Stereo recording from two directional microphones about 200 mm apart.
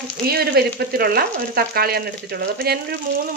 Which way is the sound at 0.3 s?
50° right (ahead or behind).